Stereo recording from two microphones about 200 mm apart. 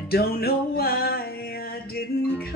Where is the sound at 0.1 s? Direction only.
50° left (ahead or behind).